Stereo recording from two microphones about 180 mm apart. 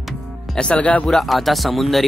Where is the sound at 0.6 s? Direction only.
5° left (ahead or behind).